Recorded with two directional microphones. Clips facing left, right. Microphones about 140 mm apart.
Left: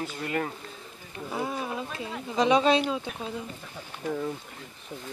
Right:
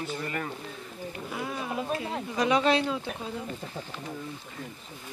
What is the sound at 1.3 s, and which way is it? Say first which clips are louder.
Speech: left 4 dB; 30° left (ahead or behind).